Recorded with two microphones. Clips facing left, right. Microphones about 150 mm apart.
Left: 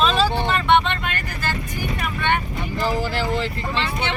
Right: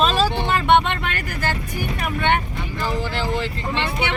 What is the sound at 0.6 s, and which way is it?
Speech, 55° right (ahead or behind).